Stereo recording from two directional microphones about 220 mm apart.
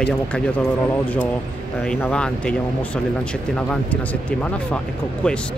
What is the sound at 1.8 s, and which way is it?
Speech, 5° left (ahead or behind).